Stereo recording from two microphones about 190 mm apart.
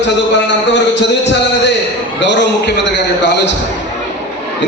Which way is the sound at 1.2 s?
65° left (ahead or behind).